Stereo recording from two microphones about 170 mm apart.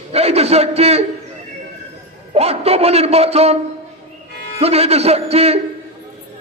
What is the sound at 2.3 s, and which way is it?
A man's voice, 35° right (ahead or behind).